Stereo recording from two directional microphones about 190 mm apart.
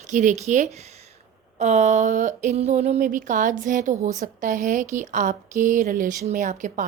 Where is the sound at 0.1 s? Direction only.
45° right (ahead or behind).